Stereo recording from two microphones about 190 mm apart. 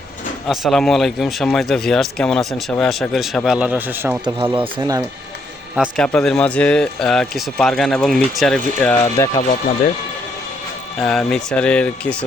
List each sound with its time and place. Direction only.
0.4 s speech: centre (ahead or behind); by 5.0 s 15° right (ahead or behind)
5.7 s speech: centre (ahead or behind)
11.0 s speech: 5° left (ahead or behind)